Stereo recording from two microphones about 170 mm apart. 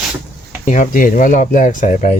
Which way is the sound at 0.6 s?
45° left (ahead or behind).